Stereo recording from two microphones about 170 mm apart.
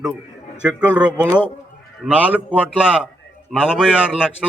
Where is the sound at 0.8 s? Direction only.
10° right (ahead or behind).